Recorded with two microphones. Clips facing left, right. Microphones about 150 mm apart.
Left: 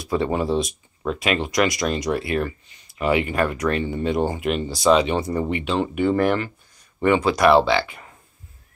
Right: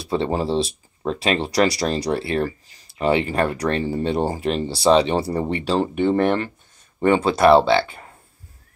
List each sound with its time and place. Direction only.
0.0 s speech: 30° right (ahead or behind)